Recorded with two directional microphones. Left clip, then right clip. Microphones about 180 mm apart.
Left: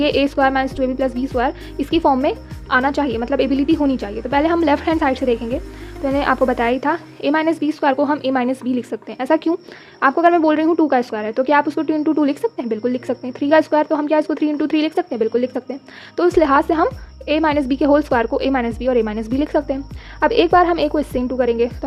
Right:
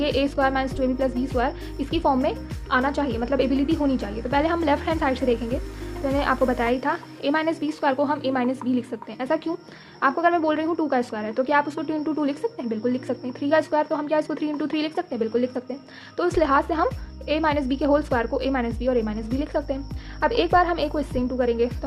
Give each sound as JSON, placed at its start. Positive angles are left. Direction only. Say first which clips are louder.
{"t": 0.0, "sound": "a woman's voice", "louder": "left 6 dB", "side_deg": 40}